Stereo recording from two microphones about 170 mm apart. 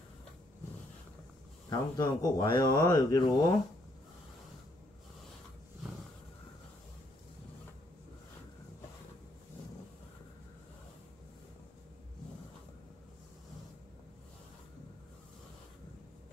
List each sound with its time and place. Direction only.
1.7 s speech: 25° left (ahead or behind)